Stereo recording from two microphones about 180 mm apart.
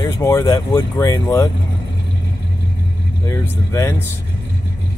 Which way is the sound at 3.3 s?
15° left (ahead or behind).